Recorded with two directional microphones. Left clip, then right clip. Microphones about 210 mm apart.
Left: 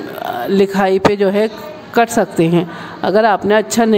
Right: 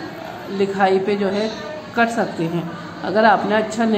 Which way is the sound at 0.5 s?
50° left (ahead or behind).